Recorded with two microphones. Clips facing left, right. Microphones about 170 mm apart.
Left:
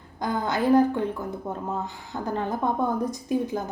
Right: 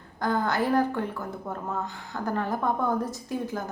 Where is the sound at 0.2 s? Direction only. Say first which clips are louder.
Even; 20° left (ahead or behind).